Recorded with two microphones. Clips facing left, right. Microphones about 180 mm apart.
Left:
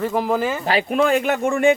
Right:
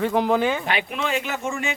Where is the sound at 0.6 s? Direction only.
35° left (ahead or behind).